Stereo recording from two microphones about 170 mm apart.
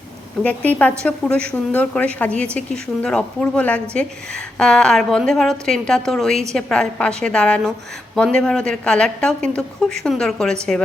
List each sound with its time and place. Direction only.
0.4 s a woman's voice: 10° left (ahead or behind)